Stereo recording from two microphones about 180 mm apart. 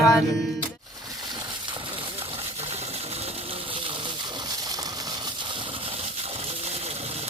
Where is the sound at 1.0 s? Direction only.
20° right (ahead or behind).